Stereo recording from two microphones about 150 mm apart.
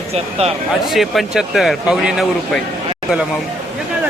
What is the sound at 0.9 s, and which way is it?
Speech, centre (ahead or behind).